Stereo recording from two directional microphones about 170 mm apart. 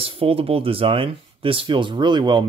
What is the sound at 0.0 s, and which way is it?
Speech, 35° right (ahead or behind).